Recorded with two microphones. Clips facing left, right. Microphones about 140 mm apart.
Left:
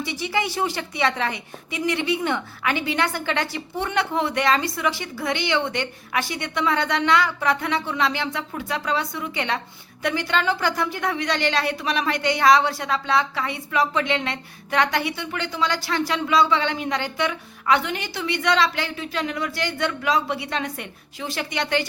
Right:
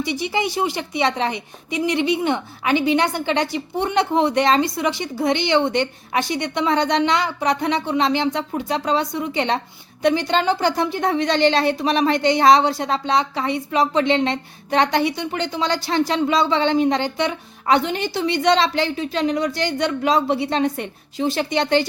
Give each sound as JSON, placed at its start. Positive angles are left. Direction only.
{"t": 0.0, "sound": "a woman's voice", "side_deg": -20}